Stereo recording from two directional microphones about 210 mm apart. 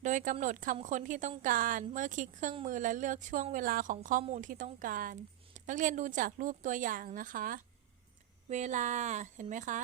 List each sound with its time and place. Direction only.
0.0 s a woman's voice: 35° right (ahead or behind)